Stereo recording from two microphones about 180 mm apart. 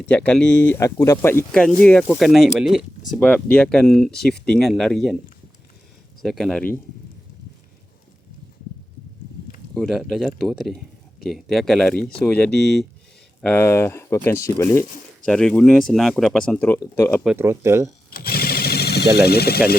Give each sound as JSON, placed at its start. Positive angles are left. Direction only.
{"t": 0.0, "sound": "speech", "side_deg": 5}
{"t": 6.2, "sound": "speech", "side_deg": 0}
{"t": 9.7, "sound": "speech", "side_deg": 0}
{"t": 17.2, "sound": "speech", "side_deg": -15}
{"t": 18.1, "sound": "a sound", "side_deg": 60}